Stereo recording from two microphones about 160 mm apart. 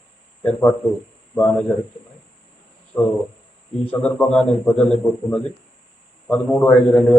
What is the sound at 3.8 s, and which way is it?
A man's voice, 10° left (ahead or behind).